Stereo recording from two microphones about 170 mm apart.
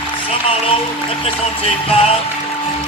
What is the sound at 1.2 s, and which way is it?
Speech, 35° left (ahead or behind).